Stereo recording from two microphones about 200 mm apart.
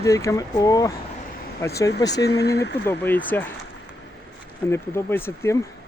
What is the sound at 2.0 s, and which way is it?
Speech, 55° left (ahead or behind).